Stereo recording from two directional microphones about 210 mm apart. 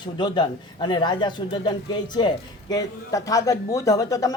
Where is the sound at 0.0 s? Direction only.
20° left (ahead or behind).